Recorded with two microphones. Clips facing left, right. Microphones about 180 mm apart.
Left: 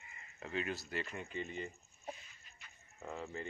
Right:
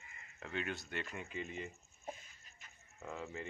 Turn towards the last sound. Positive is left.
turn(degrees=0)  # may be behind; listen again after turning